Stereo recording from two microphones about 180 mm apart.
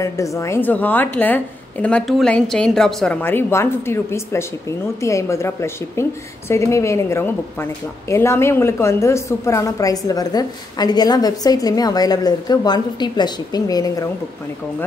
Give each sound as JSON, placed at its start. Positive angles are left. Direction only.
{"t": 0.0, "sound": "a woman's voice", "side_deg": 15}